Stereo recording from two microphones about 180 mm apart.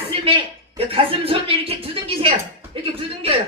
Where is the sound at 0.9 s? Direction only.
30° right (ahead or behind).